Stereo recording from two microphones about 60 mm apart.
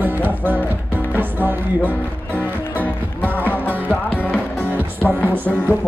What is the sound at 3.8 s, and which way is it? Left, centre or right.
Music, left.